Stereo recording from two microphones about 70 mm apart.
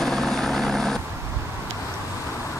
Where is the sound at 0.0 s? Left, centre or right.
Centre.